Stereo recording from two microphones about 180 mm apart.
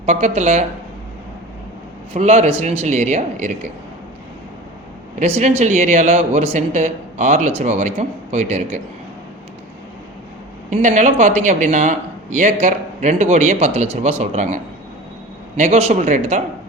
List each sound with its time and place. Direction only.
0.0 s speech: 40° right (ahead or behind)
2.1 s speech: 40° right (ahead or behind)
5.2 s speech: 35° right (ahead or behind)
10.8 s speech: 45° right (ahead or behind)